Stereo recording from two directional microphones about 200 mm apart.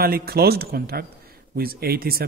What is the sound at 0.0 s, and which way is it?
Speech, 50° right (ahead or behind).